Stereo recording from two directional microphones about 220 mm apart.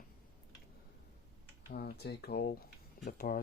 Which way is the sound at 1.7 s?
45° left (ahead or behind).